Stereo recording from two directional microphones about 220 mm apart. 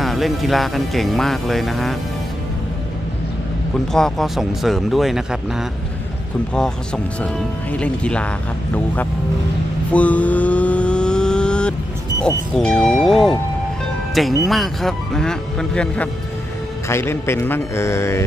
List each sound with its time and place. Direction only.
0.0 s speech: centre (ahead or behind)
3.9 s speech: centre (ahead or behind)
7.2 s speech: 5° left (ahead or behind)
9.9 s vehicle: 5° left (ahead or behind)
12.5 s a man's voice: centre (ahead or behind)